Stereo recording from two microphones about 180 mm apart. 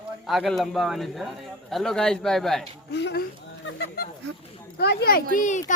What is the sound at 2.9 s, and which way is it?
Speech, 70° left (ahead or behind).